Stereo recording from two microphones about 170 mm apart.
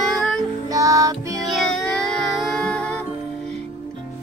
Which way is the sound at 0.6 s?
20° right (ahead or behind).